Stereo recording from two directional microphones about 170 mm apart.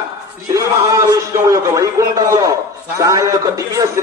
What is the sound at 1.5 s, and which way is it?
A man's voice, 20° right (ahead or behind).